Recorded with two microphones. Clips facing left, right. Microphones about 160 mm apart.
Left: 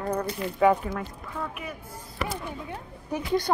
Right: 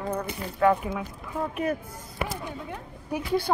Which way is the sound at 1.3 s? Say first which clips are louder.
Right 5 dB; 30° right (ahead or behind).